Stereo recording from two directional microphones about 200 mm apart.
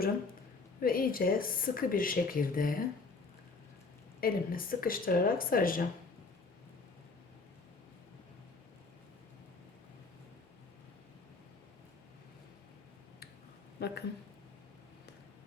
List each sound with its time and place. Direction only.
0.8 s speech: 45° left (ahead or behind)
4.2 s speech: 45° left (ahead or behind)
13.7 s speech: 55° left (ahead or behind)